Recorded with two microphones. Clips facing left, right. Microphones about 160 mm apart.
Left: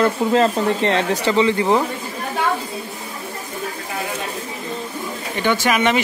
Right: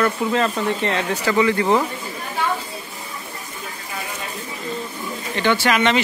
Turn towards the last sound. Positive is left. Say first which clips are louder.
# even
turn(degrees=10)  # may be behind; listen again after turning